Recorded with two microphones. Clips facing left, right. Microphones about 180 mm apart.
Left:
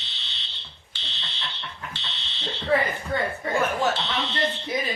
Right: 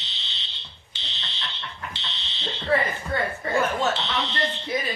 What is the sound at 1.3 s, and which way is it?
Fire alarm, 15° left (ahead or behind).